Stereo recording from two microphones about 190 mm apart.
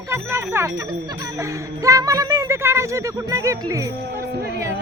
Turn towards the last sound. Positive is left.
turn(degrees=-15)  # may be behind; listen again after turning